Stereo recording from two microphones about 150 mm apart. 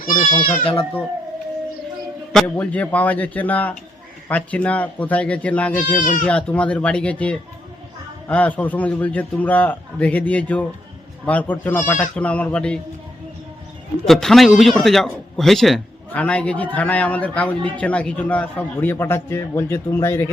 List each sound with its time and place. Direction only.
0.6 s speech: 35° left (ahead or behind)
2.3 s a man's voice: 5° left (ahead or behind)
6.0 s speech: 60° left (ahead or behind)
6.2 s a man's voice: 10° left (ahead or behind)
14.0 s a man's voice: 5° left (ahead or behind)